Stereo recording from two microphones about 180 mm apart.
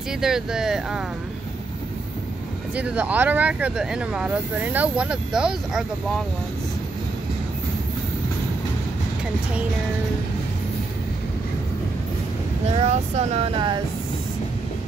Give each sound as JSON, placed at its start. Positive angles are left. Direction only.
{"t": 0.2, "sound": "speech", "side_deg": -5}
{"t": 2.7, "sound": "speech", "side_deg": -10}
{"t": 12.7, "sound": "speech", "side_deg": -35}